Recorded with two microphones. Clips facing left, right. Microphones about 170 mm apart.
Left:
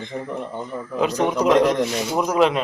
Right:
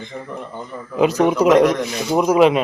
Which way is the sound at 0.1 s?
20° left (ahead or behind).